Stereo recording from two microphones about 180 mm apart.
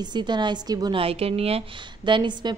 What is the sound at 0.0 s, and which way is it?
A woman's voice, 25° right (ahead or behind).